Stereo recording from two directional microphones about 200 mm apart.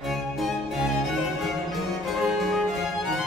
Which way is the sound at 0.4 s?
Centre (ahead or behind).